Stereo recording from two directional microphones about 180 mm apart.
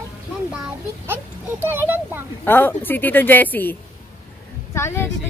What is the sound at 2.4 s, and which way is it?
Speech, 10° left (ahead or behind).